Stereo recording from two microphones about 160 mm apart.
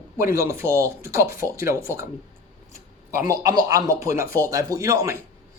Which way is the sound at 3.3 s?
20° right (ahead or behind).